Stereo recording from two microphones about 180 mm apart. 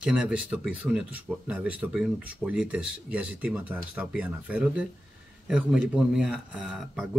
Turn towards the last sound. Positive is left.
turn(degrees=0)  # may be behind; listen again after turning